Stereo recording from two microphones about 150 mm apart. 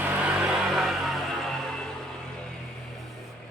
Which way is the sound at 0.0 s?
10° right (ahead or behind).